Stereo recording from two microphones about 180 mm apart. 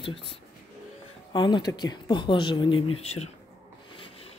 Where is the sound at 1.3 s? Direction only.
25° left (ahead or behind).